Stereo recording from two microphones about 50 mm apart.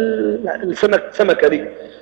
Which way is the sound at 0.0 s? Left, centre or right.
Centre.